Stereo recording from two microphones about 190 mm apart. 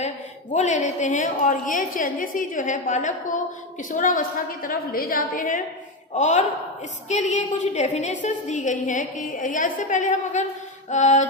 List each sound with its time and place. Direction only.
0.5 s a woman's voice: 40° left (ahead or behind)